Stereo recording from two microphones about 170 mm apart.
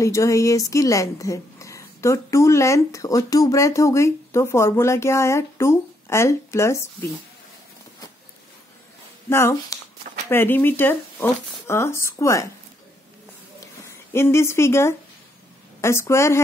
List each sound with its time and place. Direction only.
0.0 s a woman's voice: 20° left (ahead or behind)
9.3 s a woman's voice: 15° left (ahead or behind)
13.6 s a sound: 15° left (ahead or behind)
15.8 s a woman's voice: 15° left (ahead or behind)